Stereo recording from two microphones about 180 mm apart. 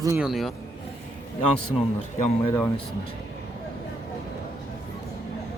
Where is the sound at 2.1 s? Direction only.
40° left (ahead or behind).